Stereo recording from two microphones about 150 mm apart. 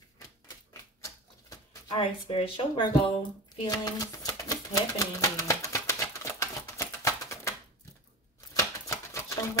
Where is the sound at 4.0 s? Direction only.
25° left (ahead or behind).